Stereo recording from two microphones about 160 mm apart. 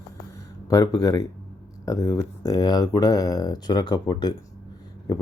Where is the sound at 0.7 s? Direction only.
20° left (ahead or behind).